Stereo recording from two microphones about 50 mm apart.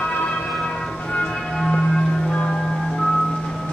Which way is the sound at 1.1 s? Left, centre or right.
Centre.